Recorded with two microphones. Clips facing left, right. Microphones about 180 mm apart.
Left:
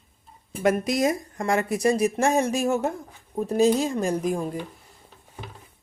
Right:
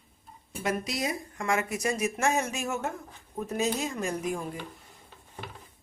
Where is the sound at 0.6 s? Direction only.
50° left (ahead or behind); by 4.6 s 35° left (ahead or behind).